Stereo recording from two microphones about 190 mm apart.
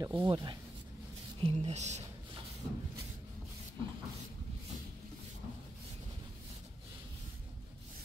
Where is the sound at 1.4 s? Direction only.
35° right (ahead or behind).